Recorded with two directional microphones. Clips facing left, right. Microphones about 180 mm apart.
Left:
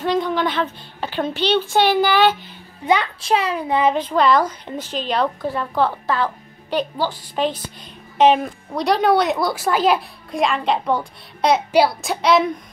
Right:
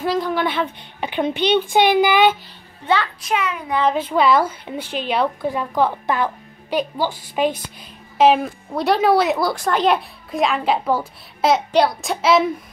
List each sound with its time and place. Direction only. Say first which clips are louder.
0.0 s a woman's voice: left 1 dB; 5° right (ahead or behind)
3.2 s a child's voice: left 3 dB; 30° left (ahead or behind)
3.9 s a woman's voice: even; 5° right (ahead or behind)